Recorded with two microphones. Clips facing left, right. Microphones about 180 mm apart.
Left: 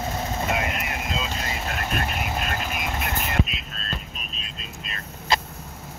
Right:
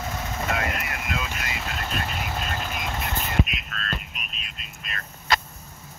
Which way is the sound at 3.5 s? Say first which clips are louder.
Even; 30° left (ahead or behind).